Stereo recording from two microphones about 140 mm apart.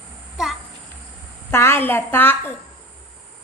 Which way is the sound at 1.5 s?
15° left (ahead or behind).